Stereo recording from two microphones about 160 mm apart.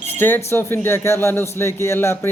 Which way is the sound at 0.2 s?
15° left (ahead or behind).